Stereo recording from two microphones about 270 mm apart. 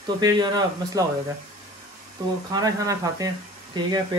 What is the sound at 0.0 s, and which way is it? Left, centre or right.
Speech, centre.